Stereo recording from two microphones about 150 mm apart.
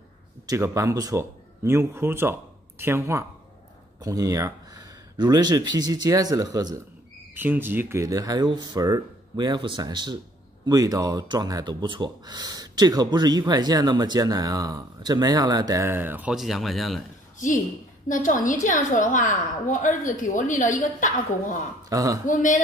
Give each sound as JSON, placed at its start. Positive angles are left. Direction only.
{"t": 0.5, "sound": "speech", "side_deg": -20}
{"t": 7.3, "sound": "speech", "side_deg": -15}
{"t": 18.0, "sound": "a woman's voice", "side_deg": 60}
{"t": 21.8, "sound": "speech", "side_deg": -25}
{"t": 22.2, "sound": "a woman's voice", "side_deg": 60}